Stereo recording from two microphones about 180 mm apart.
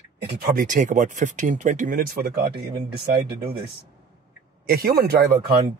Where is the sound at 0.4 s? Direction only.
45° right (ahead or behind).